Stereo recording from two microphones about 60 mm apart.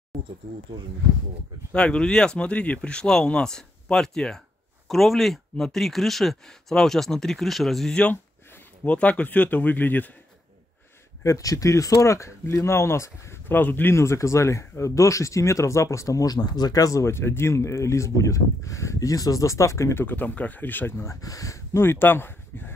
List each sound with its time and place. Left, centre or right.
0.1 s a sound: centre
1.7 s speech: centre
8.8 s speech: left
11.2 s speech: left
13.5 s speech: left
13.9 s speech: left
17.0 s speech: left
20.1 s speech: left
21.2 s speech: left
21.7 s speech: left